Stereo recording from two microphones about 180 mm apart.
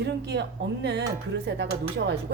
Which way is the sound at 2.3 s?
70° right (ahead or behind).